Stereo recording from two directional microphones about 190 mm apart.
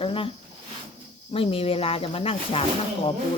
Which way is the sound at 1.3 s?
30° left (ahead or behind).